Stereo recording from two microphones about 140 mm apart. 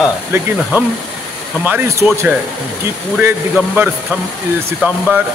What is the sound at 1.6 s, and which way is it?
Speech, 15° right (ahead or behind).